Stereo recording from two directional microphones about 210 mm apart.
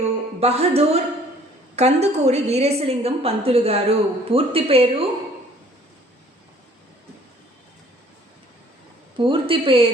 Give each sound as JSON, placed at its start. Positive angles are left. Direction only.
{"t": 0.3, "sound": "a woman's voice", "side_deg": -30}
{"t": 9.1, "sound": "a woman's voice", "side_deg": -25}